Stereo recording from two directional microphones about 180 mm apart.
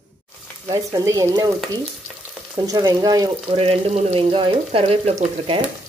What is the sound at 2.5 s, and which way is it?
Speech, 20° right (ahead or behind).